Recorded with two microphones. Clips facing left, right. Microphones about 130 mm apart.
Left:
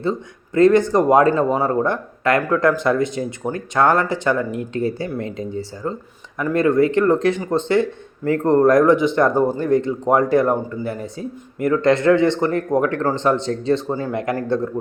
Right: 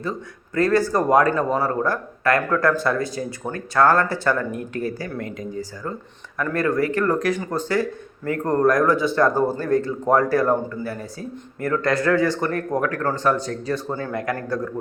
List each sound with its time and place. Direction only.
0.0 s speech: 25° left (ahead or behind)